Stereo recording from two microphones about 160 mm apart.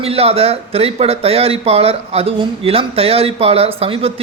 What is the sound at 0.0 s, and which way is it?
Speech, 40° right (ahead or behind).